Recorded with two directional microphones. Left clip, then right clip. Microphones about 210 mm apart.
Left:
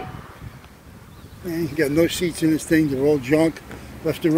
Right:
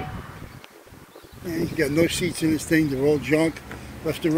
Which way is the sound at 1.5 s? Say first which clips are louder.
Left 2 dB; 25° left (ahead or behind).